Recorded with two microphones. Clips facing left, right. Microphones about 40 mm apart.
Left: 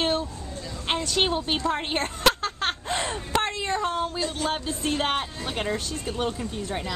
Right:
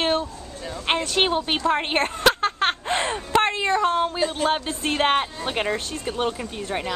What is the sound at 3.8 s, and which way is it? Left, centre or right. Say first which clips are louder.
Speech: right 5 dB; right.